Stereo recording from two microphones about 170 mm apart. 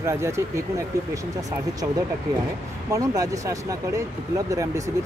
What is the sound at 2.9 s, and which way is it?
Speech, 20° right (ahead or behind).